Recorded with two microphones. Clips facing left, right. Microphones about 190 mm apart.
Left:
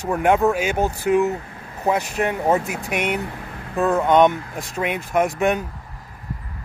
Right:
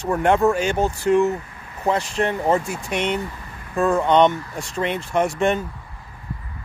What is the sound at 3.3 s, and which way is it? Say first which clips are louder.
Vehicle: left 4 dB; 65° left (ahead or behind).